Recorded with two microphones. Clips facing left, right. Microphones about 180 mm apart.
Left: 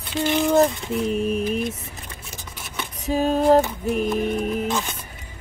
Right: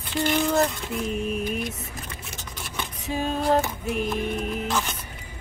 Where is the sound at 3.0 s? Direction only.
40° left (ahead or behind).